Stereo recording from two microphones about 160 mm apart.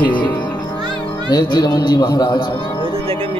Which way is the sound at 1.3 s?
25° left (ahead or behind).